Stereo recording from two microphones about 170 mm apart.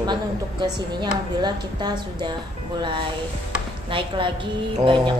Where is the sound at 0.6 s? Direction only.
25° right (ahead or behind).